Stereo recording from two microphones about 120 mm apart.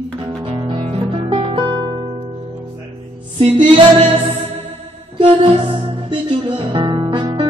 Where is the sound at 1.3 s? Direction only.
45° right (ahead or behind).